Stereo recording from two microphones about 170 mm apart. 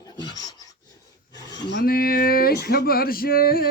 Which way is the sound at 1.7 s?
75° left (ahead or behind).